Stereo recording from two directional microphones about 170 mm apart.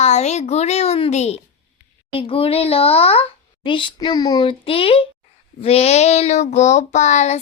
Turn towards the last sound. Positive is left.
turn(degrees=45)  # may be behind; listen again after turning